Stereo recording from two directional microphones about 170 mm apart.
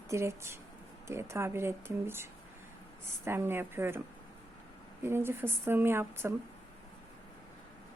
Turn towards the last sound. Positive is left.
turn(degrees=-15)  # may be behind; listen again after turning